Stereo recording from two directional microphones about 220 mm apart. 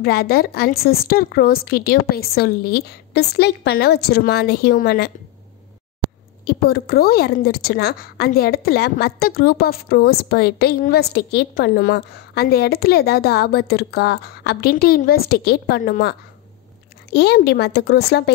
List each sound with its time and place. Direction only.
0.0 s a woman's voice: 45° left (ahead or behind)
6.4 s a woman's voice: 45° left (ahead or behind)